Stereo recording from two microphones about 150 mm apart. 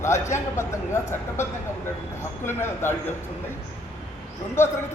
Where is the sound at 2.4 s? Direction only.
15° left (ahead or behind).